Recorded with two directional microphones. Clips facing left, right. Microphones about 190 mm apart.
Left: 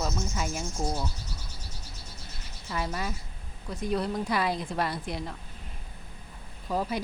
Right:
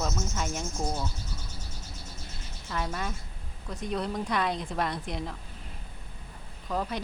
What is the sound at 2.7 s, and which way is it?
A woman's voice, 5° left (ahead or behind).